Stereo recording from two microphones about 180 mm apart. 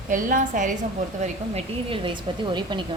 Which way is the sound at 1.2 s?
30° right (ahead or behind).